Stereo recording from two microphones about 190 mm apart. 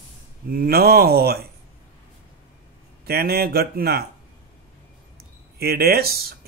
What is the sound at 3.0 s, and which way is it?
Speech, 55° right (ahead or behind).